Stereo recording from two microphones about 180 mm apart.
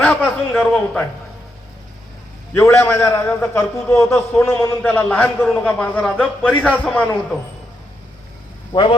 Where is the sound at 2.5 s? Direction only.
15° left (ahead or behind).